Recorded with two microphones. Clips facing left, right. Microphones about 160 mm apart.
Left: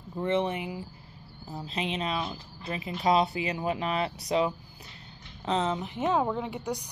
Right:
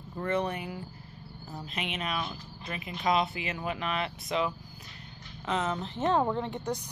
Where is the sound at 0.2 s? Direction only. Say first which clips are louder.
Left 3 dB; 25° left (ahead or behind).